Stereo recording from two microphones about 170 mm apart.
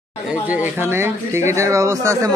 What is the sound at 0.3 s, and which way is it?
Speech, 10° right (ahead or behind).